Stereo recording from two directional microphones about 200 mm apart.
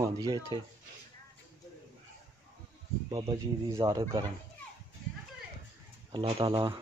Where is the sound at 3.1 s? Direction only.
20° right (ahead or behind).